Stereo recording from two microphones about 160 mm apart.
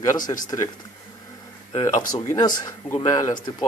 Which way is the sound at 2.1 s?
25° left (ahead or behind).